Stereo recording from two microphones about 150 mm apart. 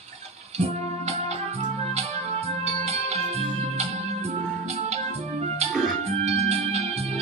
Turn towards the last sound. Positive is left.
turn(degrees=-45)  # may be behind; listen again after turning